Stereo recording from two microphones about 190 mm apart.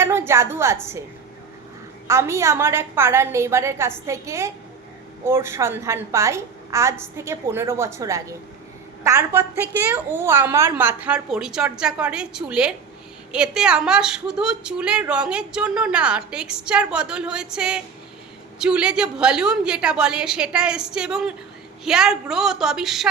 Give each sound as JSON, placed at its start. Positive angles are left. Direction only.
{"t": 0.0, "sound": "a woman's voice", "side_deg": -15}
{"t": 2.0, "sound": "a woman's voice", "side_deg": -15}